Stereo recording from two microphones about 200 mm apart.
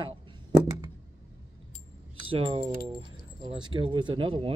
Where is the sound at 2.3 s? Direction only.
25° right (ahead or behind).